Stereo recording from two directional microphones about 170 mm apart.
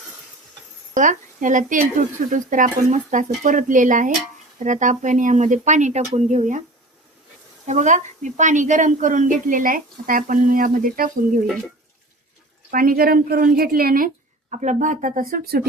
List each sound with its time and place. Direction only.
0.9 s a woman's voice: 50° right (ahead or behind)
7.7 s a woman's voice: 45° right (ahead or behind)
12.7 s speech: 60° right (ahead or behind)
14.5 s a woman's voice: 45° right (ahead or behind); by 15.6 s 60° right (ahead or behind)